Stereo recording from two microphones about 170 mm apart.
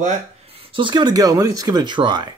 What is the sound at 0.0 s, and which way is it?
Speech, 35° right (ahead or behind).